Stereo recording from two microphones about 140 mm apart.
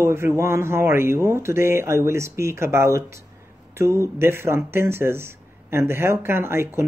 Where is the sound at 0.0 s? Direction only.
20° right (ahead or behind).